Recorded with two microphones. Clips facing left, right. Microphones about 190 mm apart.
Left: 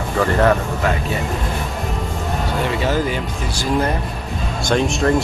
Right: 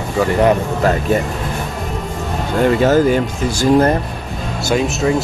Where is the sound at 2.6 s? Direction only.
50° right (ahead or behind).